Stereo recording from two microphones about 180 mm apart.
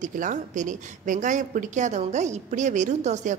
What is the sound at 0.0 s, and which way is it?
A woman's voice, 45° right (ahead or behind).